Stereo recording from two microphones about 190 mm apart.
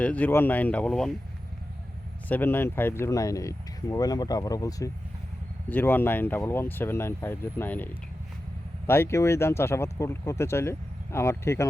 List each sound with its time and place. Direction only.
0.0 s speech: 10° left (ahead or behind)
2.3 s speech: 10° left (ahead or behind)
8.9 s speech: 15° left (ahead or behind)